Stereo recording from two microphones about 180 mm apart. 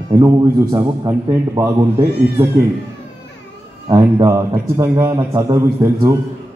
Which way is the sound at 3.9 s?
15° right (ahead or behind).